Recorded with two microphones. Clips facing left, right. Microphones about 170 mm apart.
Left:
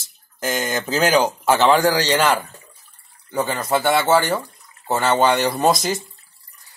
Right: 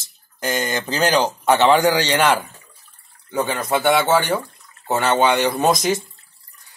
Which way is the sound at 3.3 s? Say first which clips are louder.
Even; centre (ahead or behind).